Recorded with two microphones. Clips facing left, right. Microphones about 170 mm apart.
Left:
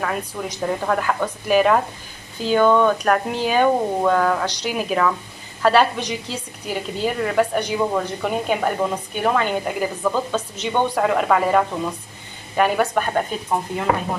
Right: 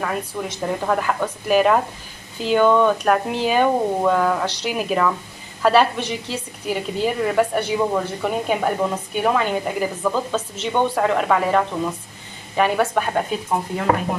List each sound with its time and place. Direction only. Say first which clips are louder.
0.0 s a woman's voice: even; centre (ahead or behind)